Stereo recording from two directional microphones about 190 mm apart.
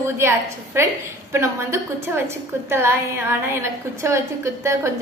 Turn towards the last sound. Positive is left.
turn(degrees=-15)  # may be behind; listen again after turning